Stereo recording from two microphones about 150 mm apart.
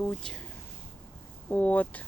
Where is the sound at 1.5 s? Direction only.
10° left (ahead or behind).